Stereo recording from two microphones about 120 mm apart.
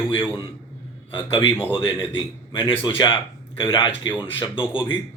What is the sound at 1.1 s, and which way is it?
A man's voice, 45° left (ahead or behind).